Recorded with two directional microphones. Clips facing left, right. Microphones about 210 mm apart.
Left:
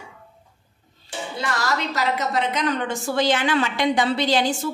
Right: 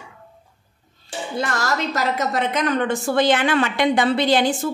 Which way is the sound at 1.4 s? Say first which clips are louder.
Right 2 dB; 45° right (ahead or behind).